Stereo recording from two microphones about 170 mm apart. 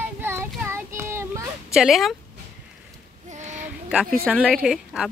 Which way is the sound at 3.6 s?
10° right (ahead or behind).